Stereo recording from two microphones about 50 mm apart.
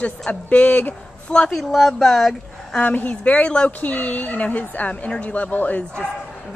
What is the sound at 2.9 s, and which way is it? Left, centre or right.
A woman's voice, left.